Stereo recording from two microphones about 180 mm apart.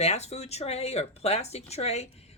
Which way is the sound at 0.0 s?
35° left (ahead or behind).